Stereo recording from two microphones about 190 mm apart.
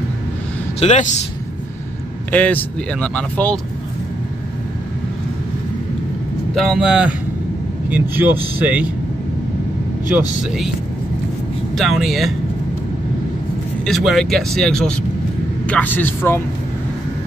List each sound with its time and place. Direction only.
0.7 s a man's voice: 40° left (ahead or behind)
2.3 s speech: 5° left (ahead or behind)
6.5 s speech: centre (ahead or behind)
10.4 s speech: centre (ahead or behind)
11.7 s speech: centre (ahead or behind)
13.8 s speech: centre (ahead or behind)